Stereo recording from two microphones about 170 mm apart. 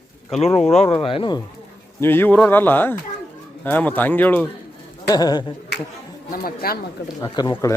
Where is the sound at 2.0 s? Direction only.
10° left (ahead or behind).